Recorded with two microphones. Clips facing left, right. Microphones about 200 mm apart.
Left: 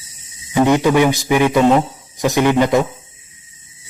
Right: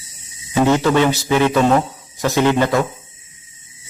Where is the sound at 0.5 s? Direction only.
15° left (ahead or behind).